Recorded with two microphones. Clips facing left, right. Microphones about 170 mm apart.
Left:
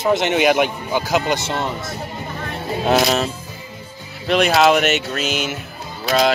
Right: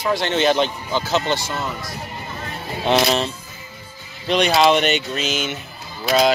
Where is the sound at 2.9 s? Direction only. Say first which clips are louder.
Left 1 dB; 5° left (ahead or behind).